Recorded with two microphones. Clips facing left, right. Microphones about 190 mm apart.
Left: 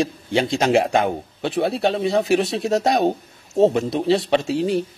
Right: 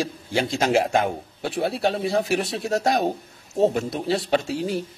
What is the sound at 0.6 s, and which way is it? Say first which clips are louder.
Speech: left 2 dB; 60° left (ahead or behind).